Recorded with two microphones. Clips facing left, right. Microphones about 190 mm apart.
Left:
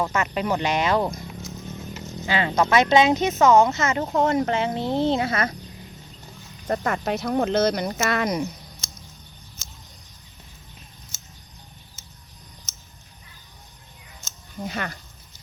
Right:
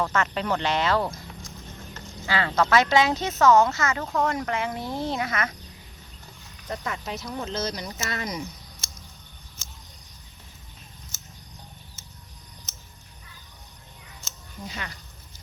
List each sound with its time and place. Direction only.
0.0 s speech: 10° left (ahead or behind)
1.4 s music: 5° left (ahead or behind)
2.2 s speech: 20° left (ahead or behind)
6.7 s speech: 55° left (ahead or behind)
14.6 s speech: 55° left (ahead or behind)